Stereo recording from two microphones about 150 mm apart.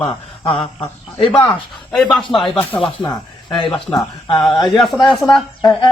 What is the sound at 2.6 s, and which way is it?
Speech, 15° left (ahead or behind).